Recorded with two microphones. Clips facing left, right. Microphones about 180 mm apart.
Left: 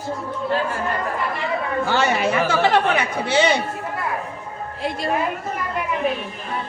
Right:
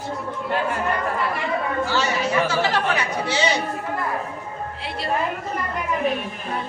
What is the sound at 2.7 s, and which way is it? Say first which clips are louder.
Speech: left 4 dB; 55° left (ahead or behind).